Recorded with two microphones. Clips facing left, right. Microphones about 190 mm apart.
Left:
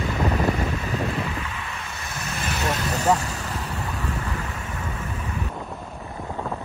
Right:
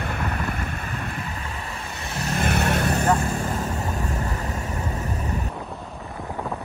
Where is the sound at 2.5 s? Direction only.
60° right (ahead or behind).